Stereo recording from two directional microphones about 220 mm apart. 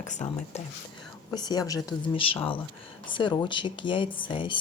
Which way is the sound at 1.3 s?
20° left (ahead or behind).